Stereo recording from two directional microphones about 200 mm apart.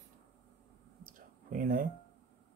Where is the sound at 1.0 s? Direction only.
40° right (ahead or behind).